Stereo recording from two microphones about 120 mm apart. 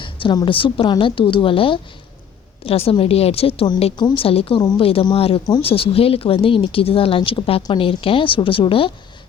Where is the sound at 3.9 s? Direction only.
45° left (ahead or behind).